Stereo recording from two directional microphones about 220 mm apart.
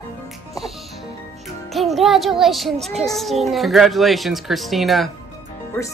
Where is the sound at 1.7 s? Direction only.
Centre (ahead or behind).